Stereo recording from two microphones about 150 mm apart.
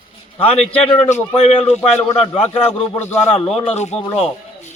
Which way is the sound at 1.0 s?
50° left (ahead or behind).